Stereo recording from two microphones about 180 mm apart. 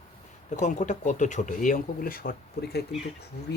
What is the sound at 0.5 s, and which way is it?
Speech, 40° left (ahead or behind).